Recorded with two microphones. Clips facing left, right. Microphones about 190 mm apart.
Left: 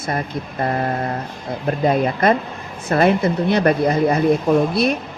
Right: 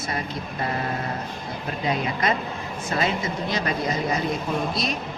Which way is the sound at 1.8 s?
50° left (ahead or behind).